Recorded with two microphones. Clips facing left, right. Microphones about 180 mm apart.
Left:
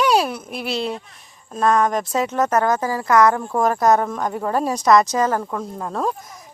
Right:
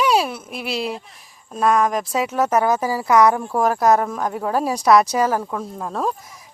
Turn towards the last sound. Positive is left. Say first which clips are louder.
# even
turn(degrees=-5)  # may be behind; listen again after turning